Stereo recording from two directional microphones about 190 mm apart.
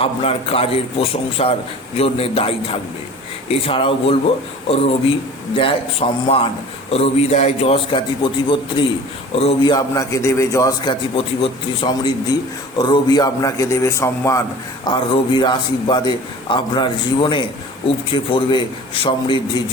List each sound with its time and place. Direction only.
0.0 s a man's voice: 30° left (ahead or behind)
5.5 s a man's voice: 30° left (ahead or behind)
9.7 s a man's voice: 15° left (ahead or behind)